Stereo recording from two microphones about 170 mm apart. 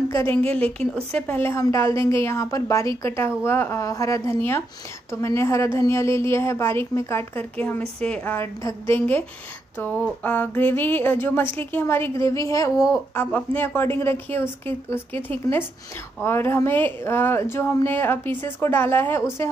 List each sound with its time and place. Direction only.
0.1 s a woman's voice: 15° left (ahead or behind)